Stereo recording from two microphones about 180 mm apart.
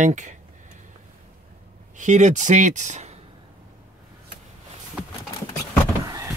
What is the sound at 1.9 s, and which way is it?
Speech, 40° right (ahead or behind).